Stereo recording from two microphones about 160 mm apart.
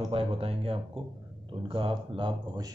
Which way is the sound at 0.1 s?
35° right (ahead or behind).